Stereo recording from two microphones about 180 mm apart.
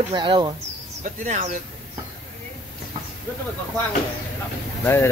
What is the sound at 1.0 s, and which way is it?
Speech, 40° right (ahead or behind).